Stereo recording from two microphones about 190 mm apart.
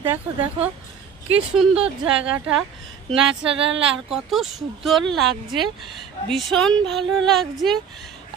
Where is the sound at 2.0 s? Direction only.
5° right (ahead or behind).